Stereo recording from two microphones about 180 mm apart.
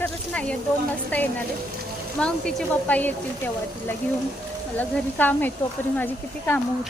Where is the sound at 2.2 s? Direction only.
5° left (ahead or behind).